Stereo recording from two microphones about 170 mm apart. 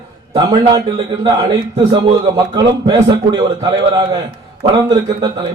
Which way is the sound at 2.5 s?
25° right (ahead or behind).